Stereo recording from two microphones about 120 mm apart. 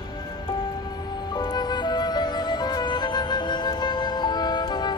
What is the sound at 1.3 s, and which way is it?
Music, 35° left (ahead or behind).